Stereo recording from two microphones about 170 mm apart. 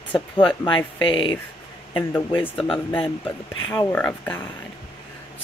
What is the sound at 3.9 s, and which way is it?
Speech, 10° left (ahead or behind).